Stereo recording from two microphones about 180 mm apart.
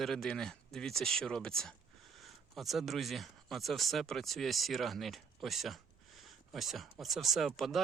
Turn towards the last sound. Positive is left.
turn(degrees=0)  # may be behind; listen again after turning